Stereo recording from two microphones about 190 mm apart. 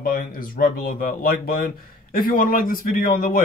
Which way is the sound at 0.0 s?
45° left (ahead or behind).